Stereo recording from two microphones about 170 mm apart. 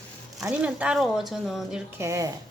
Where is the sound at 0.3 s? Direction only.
5° right (ahead or behind).